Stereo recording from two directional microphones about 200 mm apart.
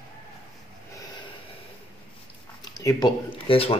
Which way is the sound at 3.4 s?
30° left (ahead or behind).